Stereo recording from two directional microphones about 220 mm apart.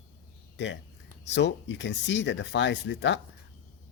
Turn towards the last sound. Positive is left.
turn(degrees=55)  # may be behind; listen again after turning